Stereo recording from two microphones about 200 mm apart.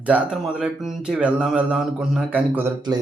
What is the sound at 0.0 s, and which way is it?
Speech, 5° right (ahead or behind).